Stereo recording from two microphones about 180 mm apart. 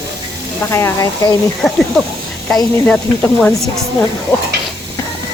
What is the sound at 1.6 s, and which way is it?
Speech, centre (ahead or behind).